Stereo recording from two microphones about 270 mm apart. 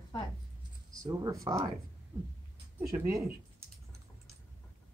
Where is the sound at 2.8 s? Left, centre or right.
Centre.